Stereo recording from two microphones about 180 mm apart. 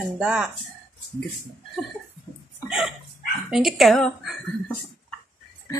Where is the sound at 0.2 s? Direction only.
5° right (ahead or behind).